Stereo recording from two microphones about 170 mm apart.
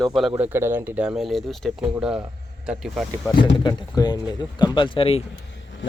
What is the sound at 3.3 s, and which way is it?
Speech, 25° left (ahead or behind).